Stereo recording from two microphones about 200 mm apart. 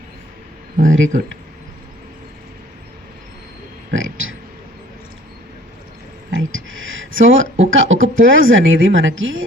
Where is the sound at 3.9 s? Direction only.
75° right (ahead or behind).